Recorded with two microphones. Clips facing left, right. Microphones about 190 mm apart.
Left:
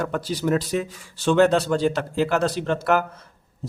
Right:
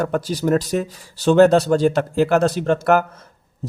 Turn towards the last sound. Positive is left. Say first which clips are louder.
# right 5 dB
turn(degrees=-45)  # may be behind; listen again after turning